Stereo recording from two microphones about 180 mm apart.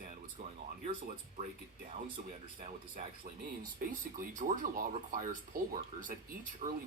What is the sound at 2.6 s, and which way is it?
Speech, 50° right (ahead or behind).